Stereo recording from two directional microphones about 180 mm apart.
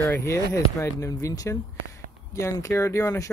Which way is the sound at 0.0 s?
15° left (ahead or behind).